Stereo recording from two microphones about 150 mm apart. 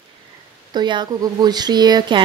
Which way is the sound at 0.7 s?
30° right (ahead or behind).